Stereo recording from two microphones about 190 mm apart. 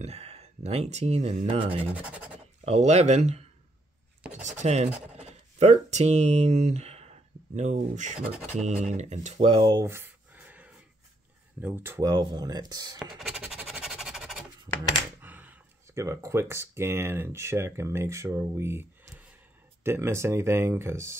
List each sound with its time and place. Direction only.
0.0 s speech: 35° right (ahead or behind)
1.9 s speech: 5° right (ahead or behind)
2.6 s speech: 35° right (ahead or behind)
9.4 s a sound: 25° right (ahead or behind); by 10.7 s 10° right (ahead or behind)
11.6 s speech: 10° right (ahead or behind)
13.0 s a sound: 5° right (ahead or behind)
15.2 s speech: 10° right (ahead or behind)